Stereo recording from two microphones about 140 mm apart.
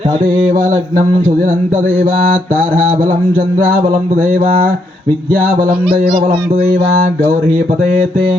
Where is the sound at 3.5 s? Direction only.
90° right.